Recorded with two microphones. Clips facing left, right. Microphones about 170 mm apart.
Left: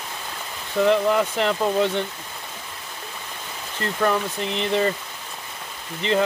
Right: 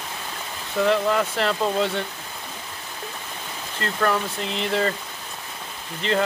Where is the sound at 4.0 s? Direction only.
15° left (ahead or behind).